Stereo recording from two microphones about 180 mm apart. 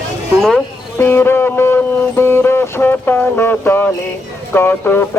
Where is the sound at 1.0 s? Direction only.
10° left (ahead or behind).